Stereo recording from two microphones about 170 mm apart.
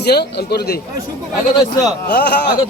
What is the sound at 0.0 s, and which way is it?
Speech, 75° left (ahead or behind).